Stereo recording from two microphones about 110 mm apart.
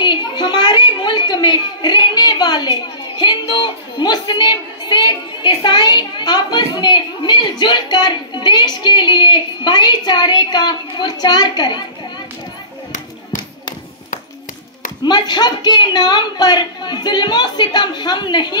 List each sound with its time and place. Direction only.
0.0 s a woman's voice: 45° left (ahead or behind)
15.0 s speech: 40° left (ahead or behind)